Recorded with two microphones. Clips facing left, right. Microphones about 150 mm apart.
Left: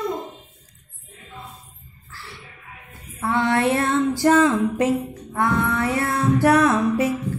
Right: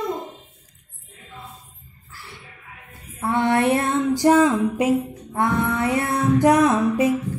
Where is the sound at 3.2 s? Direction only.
20° right (ahead or behind).